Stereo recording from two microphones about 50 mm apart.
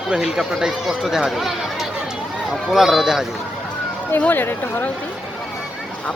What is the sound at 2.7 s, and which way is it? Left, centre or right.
Speech, centre.